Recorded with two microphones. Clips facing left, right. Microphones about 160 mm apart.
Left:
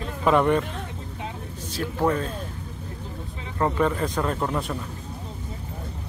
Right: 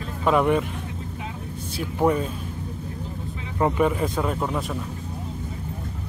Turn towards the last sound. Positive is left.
turn(degrees=-5)  # may be behind; listen again after turning